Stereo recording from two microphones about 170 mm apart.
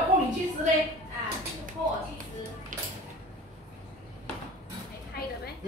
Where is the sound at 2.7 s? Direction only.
50° right (ahead or behind).